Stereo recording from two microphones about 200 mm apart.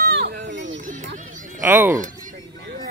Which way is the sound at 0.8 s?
40° right (ahead or behind).